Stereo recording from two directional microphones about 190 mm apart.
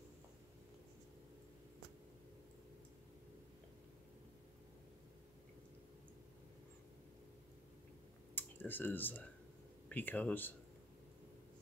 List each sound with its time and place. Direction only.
8.4 s speech: 10° left (ahead or behind)